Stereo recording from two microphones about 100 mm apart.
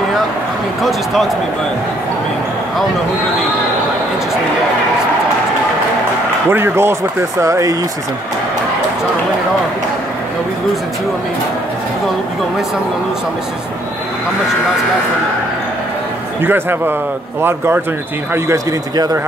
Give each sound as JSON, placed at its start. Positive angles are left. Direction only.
{"t": 6.5, "sound": "speech", "side_deg": -25}
{"t": 16.3, "sound": "speech", "side_deg": -20}